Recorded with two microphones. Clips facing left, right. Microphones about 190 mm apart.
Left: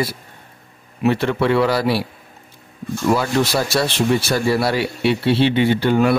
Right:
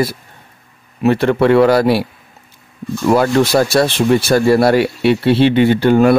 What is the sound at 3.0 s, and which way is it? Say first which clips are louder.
A man's voice: right 5 dB; 55° right (ahead or behind).